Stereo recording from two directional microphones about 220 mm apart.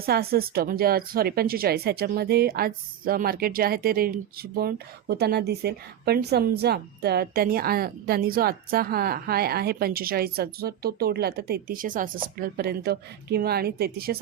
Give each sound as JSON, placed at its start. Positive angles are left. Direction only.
{"t": 0.0, "sound": "speech", "side_deg": -45}